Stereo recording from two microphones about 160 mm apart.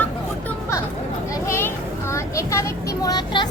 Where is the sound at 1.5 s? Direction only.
15° left (ahead or behind).